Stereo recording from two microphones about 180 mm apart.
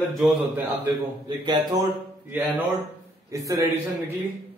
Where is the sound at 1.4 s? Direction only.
20° right (ahead or behind).